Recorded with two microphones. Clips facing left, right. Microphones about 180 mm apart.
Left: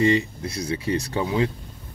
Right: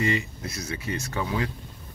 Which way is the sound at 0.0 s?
30° left (ahead or behind).